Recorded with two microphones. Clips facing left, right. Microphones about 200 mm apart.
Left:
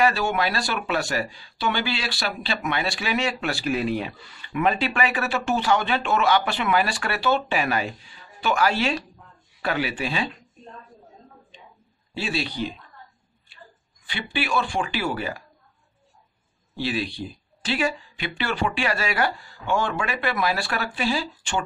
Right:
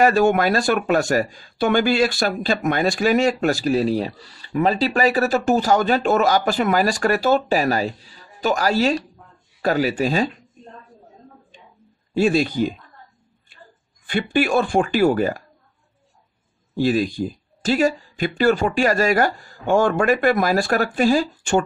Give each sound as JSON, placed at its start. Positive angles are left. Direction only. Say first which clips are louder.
{"t": 0.0, "sound": "speech", "louder": "right 6 dB", "side_deg": -50}
{"t": 12.1, "sound": "speech", "louder": "right 11 dB", "side_deg": -45}
{"t": 14.0, "sound": "speech", "louder": "right 9 dB", "side_deg": -50}
{"t": 16.7, "sound": "speech", "louder": "right 8 dB", "side_deg": -45}